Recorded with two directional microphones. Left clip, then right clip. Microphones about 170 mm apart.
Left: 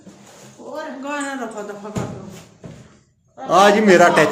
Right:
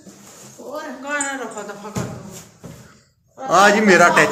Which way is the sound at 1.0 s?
65° left (ahead or behind).